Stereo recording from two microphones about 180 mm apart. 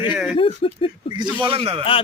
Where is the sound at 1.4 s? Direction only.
30° right (ahead or behind).